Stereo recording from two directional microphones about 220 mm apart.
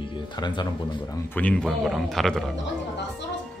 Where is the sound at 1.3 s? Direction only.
5° left (ahead or behind).